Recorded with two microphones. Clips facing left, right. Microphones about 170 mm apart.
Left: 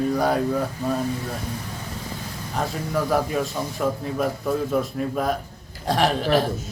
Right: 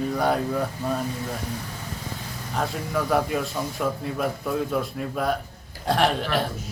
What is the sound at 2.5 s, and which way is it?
Speech, centre (ahead or behind).